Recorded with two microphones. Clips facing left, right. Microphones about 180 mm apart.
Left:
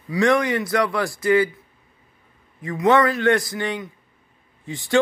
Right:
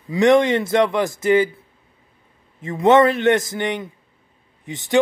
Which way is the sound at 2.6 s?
25° right (ahead or behind).